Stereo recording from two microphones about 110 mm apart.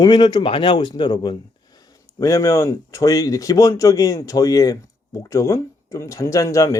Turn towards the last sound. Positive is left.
turn(degrees=30)  # may be behind; listen again after turning